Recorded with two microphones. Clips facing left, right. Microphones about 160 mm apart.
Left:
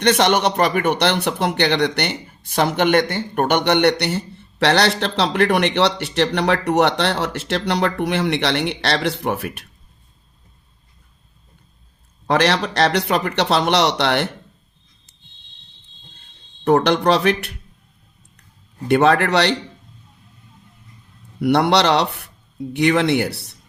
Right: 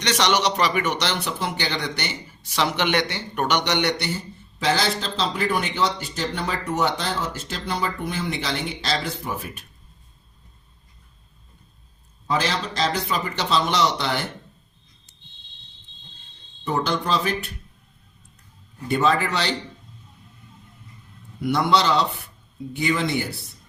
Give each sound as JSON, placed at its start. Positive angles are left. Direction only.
{"t": 0.0, "sound": "a man's voice", "side_deg": 55}
{"t": 12.3, "sound": "speech", "side_deg": 75}
{"t": 16.6, "sound": "speech", "side_deg": 70}
{"t": 18.9, "sound": "speech", "side_deg": 65}
{"t": 21.4, "sound": "speech", "side_deg": 65}